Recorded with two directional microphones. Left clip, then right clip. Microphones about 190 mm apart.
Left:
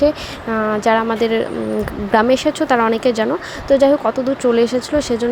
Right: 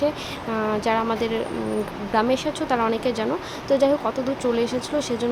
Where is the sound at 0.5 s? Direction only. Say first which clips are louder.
Left 7 dB; 25° left (ahead or behind).